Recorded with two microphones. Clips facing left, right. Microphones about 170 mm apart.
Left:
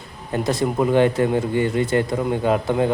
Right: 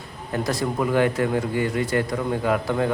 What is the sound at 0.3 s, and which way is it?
A man's voice, 25° left (ahead or behind).